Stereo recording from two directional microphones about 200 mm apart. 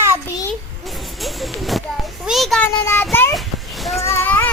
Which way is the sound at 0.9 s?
Centre (ahead or behind).